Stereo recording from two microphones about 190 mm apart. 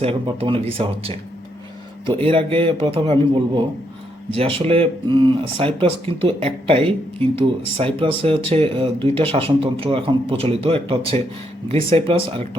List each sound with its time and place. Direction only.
0.0 s speech: 30° right (ahead or behind)
2.2 s speech: 30° right (ahead or behind)